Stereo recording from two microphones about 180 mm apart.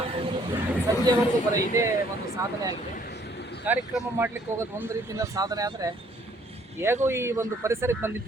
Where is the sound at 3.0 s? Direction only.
65° left (ahead or behind).